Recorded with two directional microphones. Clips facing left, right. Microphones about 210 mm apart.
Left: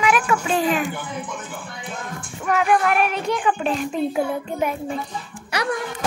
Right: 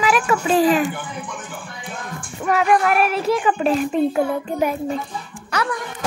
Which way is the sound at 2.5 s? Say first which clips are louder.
Right 2 dB; centre (ahead or behind).